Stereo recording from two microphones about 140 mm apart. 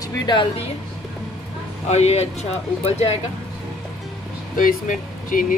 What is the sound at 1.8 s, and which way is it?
Speech, 50° left (ahead or behind).